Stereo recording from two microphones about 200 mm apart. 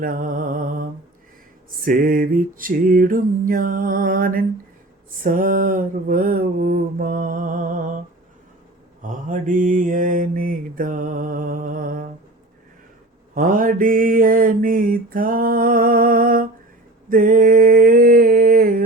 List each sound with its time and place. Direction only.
0.0 s mantra: 45° right (ahead or behind)
9.0 s mantra: 40° right (ahead or behind)
13.3 s mantra: 45° right (ahead or behind)
17.1 s a sound: 45° right (ahead or behind)